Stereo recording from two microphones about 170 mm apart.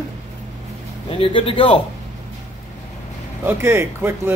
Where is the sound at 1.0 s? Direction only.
30° left (ahead or behind).